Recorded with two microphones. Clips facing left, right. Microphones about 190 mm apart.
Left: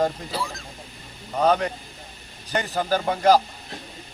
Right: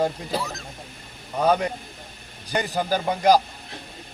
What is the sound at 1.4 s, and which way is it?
Speech, 10° right (ahead or behind).